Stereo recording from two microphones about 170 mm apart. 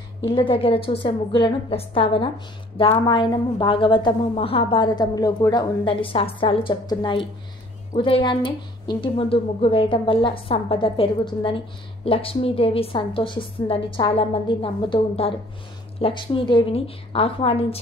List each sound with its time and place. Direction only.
0.2 s a woman's voice: 30° left (ahead or behind)